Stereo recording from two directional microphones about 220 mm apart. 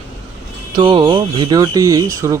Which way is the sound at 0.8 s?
20° right (ahead or behind).